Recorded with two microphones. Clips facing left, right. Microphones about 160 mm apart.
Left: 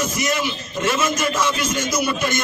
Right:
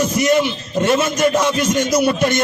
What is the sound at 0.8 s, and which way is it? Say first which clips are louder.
Speech: right 5 dB; 60° right (ahead or behind).